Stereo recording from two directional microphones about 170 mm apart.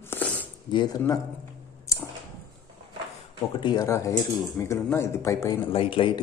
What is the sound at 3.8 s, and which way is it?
A man's voice, 15° left (ahead or behind).